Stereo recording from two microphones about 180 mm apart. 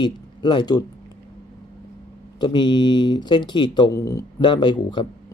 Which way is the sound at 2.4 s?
25° left (ahead or behind).